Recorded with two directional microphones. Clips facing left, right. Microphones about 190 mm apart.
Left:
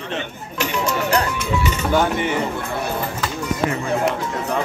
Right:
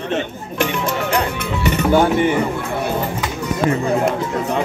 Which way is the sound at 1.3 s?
60° right (ahead or behind).